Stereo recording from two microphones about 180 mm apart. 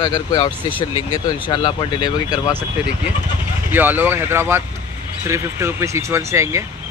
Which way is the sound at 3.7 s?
10° right (ahead or behind).